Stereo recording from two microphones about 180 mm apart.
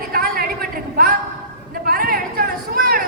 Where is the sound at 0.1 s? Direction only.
55° right (ahead or behind).